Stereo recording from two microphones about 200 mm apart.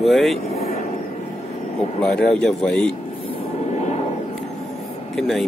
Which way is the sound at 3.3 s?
30° left (ahead or behind).